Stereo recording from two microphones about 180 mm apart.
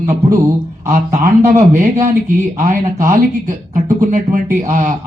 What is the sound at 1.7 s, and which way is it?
Speech, 45° right (ahead or behind).